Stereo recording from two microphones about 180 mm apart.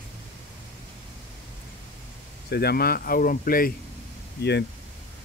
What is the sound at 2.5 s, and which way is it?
Speech, 60° left (ahead or behind).